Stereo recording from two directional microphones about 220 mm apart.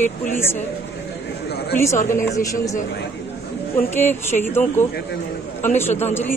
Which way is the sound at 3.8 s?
10° left (ahead or behind).